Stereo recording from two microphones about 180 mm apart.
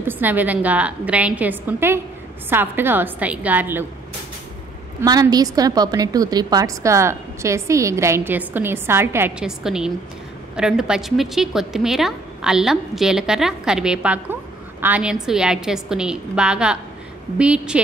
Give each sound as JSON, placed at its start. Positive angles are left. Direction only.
{"t": 0.0, "sound": "a woman's voice", "side_deg": -10}
{"t": 5.0, "sound": "a woman's voice", "side_deg": -20}